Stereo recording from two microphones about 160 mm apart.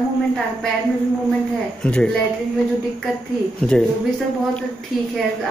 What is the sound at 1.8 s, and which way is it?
Speech, 5° left (ahead or behind).